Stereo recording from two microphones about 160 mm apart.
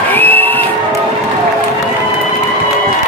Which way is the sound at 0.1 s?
10° left (ahead or behind).